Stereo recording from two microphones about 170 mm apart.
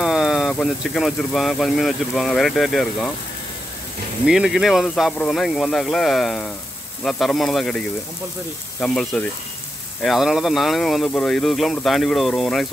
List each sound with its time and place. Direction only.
0.0 s speech: centre (ahead or behind)
4.3 s speech: centre (ahead or behind)
8.8 s speech: 5° left (ahead or behind)